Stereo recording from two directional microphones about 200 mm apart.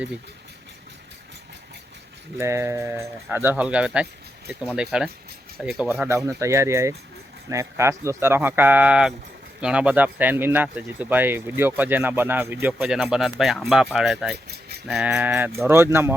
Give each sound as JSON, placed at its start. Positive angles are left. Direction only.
{"t": 2.4, "sound": "speech", "side_deg": -15}